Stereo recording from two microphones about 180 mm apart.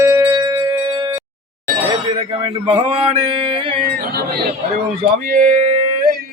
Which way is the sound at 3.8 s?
55° right (ahead or behind).